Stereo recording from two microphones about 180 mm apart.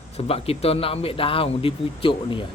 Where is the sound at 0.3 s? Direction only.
35° left (ahead or behind).